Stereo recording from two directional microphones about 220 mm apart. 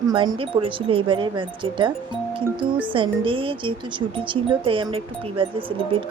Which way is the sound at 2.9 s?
25° right (ahead or behind).